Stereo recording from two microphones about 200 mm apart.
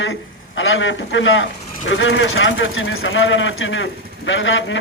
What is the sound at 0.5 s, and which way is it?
A man's voice, 70° left (ahead or behind).